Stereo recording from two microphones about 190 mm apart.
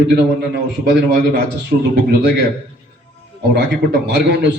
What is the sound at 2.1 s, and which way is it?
Speech, 65° right (ahead or behind).